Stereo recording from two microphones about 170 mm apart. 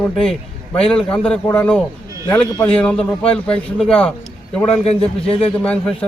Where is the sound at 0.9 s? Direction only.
5° left (ahead or behind).